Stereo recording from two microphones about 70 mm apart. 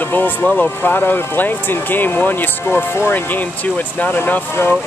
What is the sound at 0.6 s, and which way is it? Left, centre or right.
Speech, left.